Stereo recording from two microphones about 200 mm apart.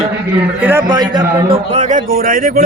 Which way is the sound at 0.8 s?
20° right (ahead or behind).